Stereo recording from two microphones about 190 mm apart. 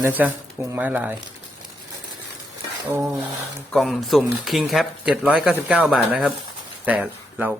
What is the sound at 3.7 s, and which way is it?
Speech, centre (ahead or behind).